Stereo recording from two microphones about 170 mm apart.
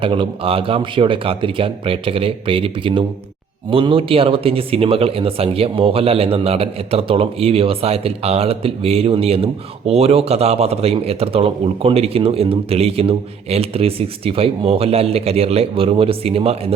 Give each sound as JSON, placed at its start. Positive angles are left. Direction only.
{"t": 0.0, "sound": "speech", "side_deg": -30}